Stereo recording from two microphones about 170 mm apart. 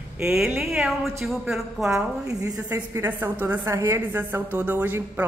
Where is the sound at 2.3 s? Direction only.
20° right (ahead or behind).